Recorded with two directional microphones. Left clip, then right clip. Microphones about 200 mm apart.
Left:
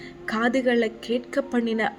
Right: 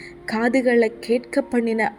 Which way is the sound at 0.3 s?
20° right (ahead or behind).